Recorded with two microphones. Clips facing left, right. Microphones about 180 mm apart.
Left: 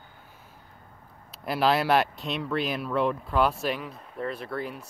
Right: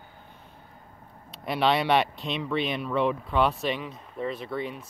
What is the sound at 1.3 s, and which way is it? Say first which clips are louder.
Speech: even; centre (ahead or behind).